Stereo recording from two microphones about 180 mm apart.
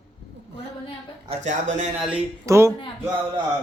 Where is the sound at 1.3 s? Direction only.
40° right (ahead or behind).